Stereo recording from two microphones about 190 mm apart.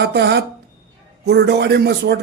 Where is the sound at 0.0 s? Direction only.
60° right (ahead or behind).